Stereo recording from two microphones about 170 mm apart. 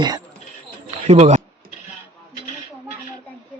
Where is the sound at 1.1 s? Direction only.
40° right (ahead or behind).